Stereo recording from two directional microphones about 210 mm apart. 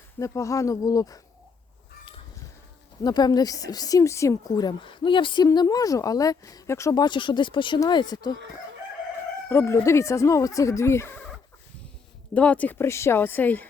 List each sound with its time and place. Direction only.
0.2 s speech: 15° left (ahead or behind)
3.0 s speech: 20° left (ahead or behind)
9.5 s speech: 10° left (ahead or behind)
12.3 s speech: 5° left (ahead or behind)